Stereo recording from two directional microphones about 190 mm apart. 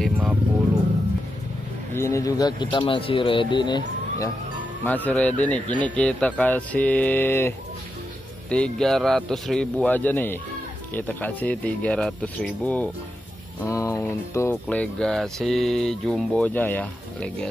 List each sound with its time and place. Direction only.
0.0 s vehicle: 5° right (ahead or behind)
2.0 s speech: 15° left (ahead or behind)
4.8 s speech: 10° left (ahead or behind)